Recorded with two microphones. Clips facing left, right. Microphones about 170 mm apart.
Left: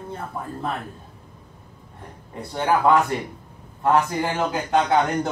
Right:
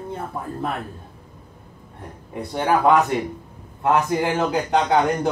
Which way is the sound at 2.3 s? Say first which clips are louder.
Right 1 dB; 15° right (ahead or behind).